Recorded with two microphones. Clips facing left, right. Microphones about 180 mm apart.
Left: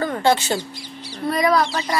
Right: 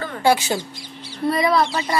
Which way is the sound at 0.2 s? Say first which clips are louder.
Right 3 dB; 10° right (ahead or behind).